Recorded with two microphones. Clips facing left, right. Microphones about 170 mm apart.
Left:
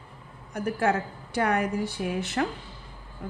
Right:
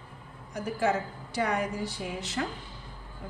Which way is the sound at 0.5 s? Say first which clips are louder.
Left 3 dB; 55° left (ahead or behind).